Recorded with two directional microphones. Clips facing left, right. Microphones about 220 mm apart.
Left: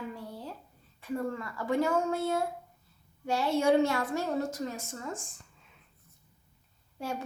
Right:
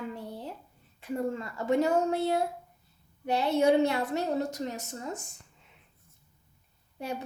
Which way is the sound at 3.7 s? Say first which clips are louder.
Right 1 dB; 20° right (ahead or behind).